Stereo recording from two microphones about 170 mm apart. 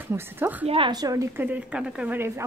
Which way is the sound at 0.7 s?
25° right (ahead or behind).